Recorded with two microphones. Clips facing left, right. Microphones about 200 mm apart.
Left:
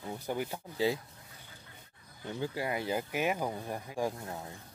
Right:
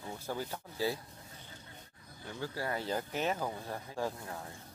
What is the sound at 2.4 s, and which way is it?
Speech, 15° left (ahead or behind).